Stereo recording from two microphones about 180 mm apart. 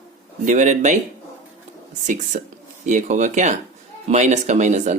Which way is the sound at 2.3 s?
50° right (ahead or behind).